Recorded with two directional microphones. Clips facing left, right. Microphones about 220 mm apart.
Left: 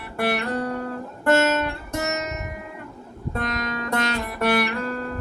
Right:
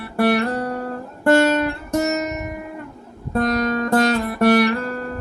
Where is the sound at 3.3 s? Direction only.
35° right (ahead or behind).